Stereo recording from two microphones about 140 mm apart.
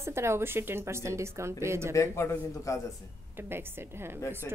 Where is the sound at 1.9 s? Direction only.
20° left (ahead or behind).